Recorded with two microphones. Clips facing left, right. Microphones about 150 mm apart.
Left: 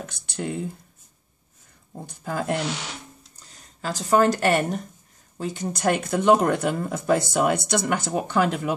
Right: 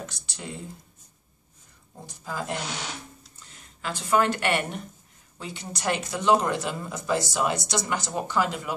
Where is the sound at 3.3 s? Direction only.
40° left (ahead or behind); by 8.5 s 55° left (ahead or behind).